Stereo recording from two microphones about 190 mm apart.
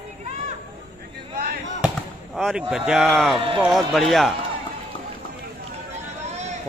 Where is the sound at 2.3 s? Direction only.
Centre (ahead or behind).